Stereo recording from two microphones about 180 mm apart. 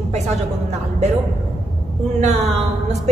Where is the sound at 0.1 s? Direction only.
35° right (ahead or behind).